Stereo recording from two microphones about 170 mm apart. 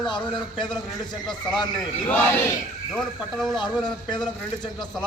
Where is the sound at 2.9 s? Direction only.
Centre (ahead or behind).